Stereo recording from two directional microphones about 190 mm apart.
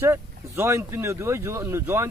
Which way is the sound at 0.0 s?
15° right (ahead or behind).